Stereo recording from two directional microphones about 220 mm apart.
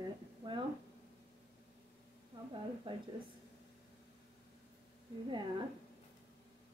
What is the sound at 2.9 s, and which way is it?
Speech, 25° right (ahead or behind).